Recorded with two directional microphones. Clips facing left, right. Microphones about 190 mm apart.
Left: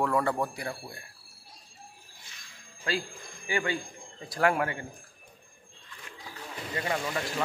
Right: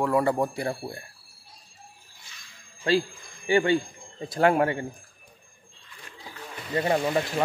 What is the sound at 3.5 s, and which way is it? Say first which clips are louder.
Speech: right 9 dB; 30° right (ahead or behind).